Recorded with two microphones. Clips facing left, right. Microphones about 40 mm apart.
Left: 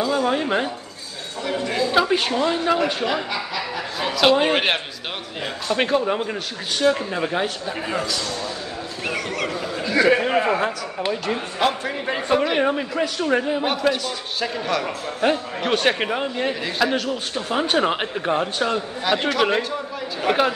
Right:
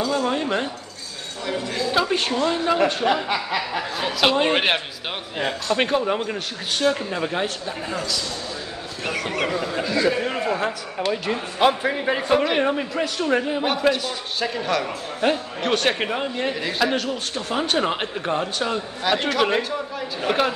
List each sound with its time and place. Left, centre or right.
0.0 s a woman's voice: centre
7.9 s a man's voice: left
9.3 s speech: centre
10.2 s a man's voice: left
11.2 s a man's voice: centre